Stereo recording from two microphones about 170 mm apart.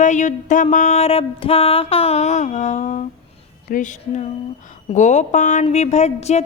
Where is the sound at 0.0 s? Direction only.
45° left (ahead or behind).